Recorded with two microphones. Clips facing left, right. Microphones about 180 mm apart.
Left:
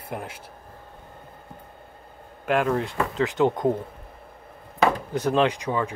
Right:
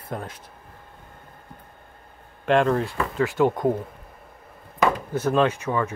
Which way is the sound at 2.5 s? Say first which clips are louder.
Right 3 dB; 10° left (ahead or behind).